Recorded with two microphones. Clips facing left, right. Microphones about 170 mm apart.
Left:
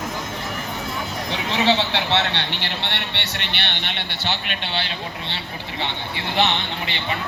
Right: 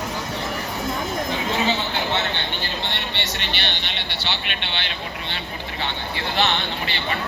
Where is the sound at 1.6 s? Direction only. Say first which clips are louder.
Left 3 dB; 80° left; by 5.4 s 35° left (ahead or behind).